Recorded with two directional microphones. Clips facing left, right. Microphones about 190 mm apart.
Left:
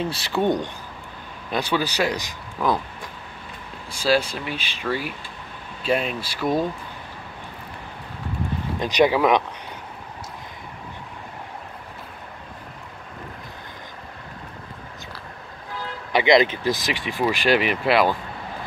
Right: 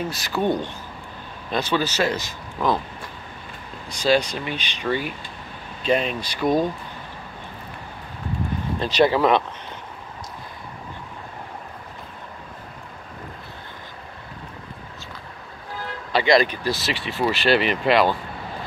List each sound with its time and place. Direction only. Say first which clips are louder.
0.0 s speech: left 1 dB; 30° left (ahead or behind)
0.4 s speech: left 1 dB; 20° left (ahead or behind)
3.9 s speech: right 1 dB; 5° left (ahead or behind)
8.7 s speech: even; 15° left (ahead or behind)
16.1 s speech: left 1 dB; 20° left (ahead or behind)